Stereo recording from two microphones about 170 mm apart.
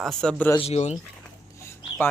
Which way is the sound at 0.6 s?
40° left (ahead or behind).